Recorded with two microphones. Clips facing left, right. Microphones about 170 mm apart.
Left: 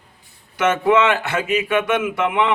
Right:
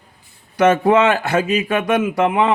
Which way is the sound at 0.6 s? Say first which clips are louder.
Right 3 dB; 35° right (ahead or behind).